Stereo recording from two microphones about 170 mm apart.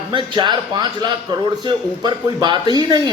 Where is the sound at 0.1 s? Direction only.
30° right (ahead or behind).